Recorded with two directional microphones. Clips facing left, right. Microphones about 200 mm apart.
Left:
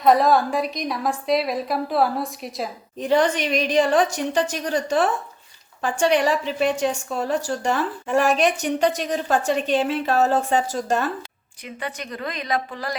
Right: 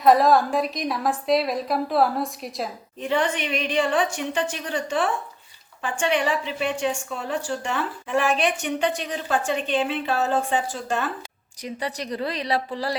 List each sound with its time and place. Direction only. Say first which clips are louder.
0.0 s a woman's voice: even; centre (ahead or behind)
3.0 s a woman's voice: left 4 dB; 40° left (ahead or behind)
11.6 s a woman's voice: right 2 dB; 35° right (ahead or behind)